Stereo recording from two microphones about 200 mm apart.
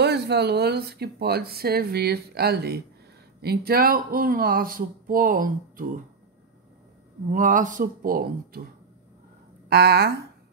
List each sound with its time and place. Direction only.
0.0 s speech: 55° right (ahead or behind)
7.2 s speech: 40° right (ahead or behind)
9.7 s speech: 50° right (ahead or behind)